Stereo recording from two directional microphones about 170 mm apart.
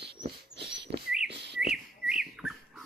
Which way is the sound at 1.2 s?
80° right.